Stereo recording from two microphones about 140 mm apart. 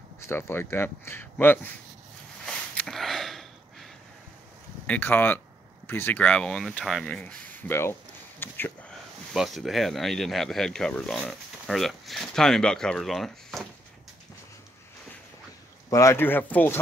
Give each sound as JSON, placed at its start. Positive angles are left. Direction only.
{"t": 0.3, "sound": "speech", "side_deg": 15}
{"t": 2.4, "sound": "a sound", "side_deg": 10}
{"t": 4.8, "sound": "speech", "side_deg": 10}
{"t": 9.3, "sound": "speech", "side_deg": 0}
{"t": 15.9, "sound": "speech", "side_deg": 20}